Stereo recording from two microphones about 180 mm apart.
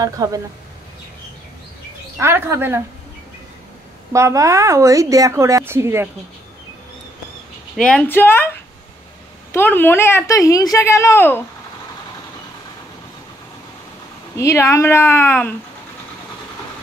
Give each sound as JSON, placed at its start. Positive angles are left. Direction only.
{"t": 0.0, "sound": "speech", "side_deg": -20}
{"t": 2.1, "sound": "speech", "side_deg": -10}
{"t": 4.1, "sound": "speech", "side_deg": -15}
{"t": 7.7, "sound": "a woman's voice", "side_deg": 5}
{"t": 9.5, "sound": "a woman's voice", "side_deg": 10}
{"t": 14.3, "sound": "a woman's voice", "side_deg": 15}